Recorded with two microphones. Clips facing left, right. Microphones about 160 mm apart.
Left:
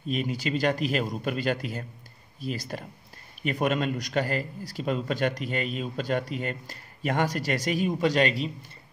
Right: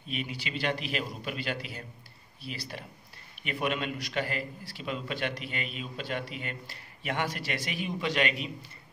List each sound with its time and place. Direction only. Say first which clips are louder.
0.0 s a man's voice: left 8 dB; 40° left (ahead or behind)